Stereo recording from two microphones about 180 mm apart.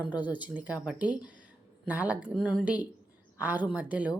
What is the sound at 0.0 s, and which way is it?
A woman's voice, 10° right (ahead or behind).